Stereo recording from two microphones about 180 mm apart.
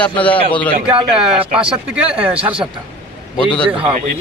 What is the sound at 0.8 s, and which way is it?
Speech, 5° right (ahead or behind).